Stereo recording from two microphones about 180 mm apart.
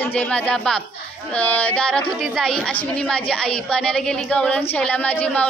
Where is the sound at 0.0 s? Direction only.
10° left (ahead or behind).